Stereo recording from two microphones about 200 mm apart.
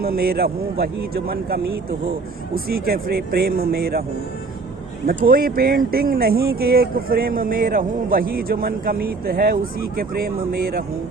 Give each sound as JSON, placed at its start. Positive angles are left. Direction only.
{"t": 0.0, "sound": "speech", "side_deg": -50}
{"t": 5.0, "sound": "speech", "side_deg": -45}